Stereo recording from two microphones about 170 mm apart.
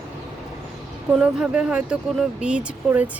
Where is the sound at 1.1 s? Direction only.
5° right (ahead or behind).